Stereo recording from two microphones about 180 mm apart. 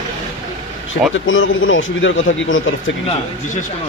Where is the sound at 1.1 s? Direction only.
90° left.